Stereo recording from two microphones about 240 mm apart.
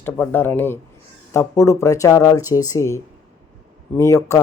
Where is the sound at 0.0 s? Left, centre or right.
Centre.